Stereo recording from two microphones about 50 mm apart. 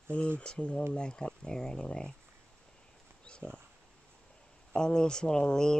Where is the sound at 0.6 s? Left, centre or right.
Left.